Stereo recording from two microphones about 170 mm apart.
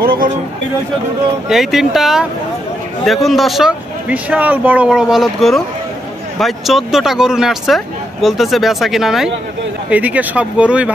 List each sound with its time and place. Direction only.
0.0 s speech: 60° right (ahead or behind)
1.5 s speech: centre (ahead or behind)